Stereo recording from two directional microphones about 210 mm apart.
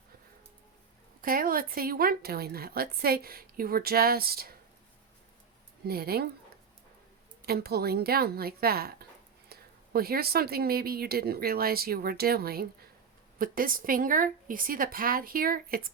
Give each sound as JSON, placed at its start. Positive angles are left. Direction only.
{"t": 1.2, "sound": "speech", "side_deg": -45}
{"t": 5.8, "sound": "speech", "side_deg": -45}
{"t": 7.4, "sound": "speech", "side_deg": -50}